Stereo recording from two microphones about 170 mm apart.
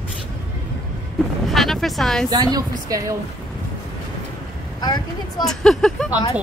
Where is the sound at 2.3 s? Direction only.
20° right (ahead or behind).